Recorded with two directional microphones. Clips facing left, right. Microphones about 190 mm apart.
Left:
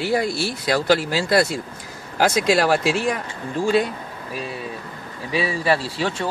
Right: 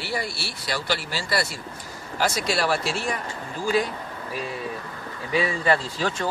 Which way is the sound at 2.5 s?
90° left.